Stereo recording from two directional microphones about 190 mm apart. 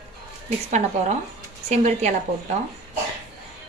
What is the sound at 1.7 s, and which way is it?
Speech, 35° right (ahead or behind).